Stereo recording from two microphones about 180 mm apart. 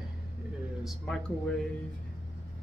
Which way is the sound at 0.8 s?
Centre (ahead or behind).